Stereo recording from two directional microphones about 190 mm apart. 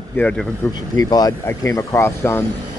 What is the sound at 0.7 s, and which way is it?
Speech, 20° left (ahead or behind).